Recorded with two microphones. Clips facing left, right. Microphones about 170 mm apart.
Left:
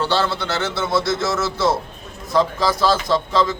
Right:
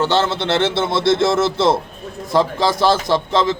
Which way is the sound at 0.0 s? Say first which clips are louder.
Right 3 dB; 20° right (ahead or behind).